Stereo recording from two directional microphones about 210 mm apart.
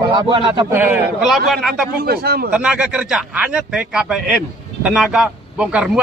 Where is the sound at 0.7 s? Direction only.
10° right (ahead or behind).